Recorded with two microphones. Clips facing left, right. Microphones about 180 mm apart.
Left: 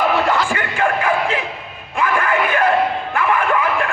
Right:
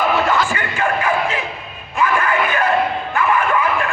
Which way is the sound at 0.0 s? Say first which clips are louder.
Even; 35° left (ahead or behind).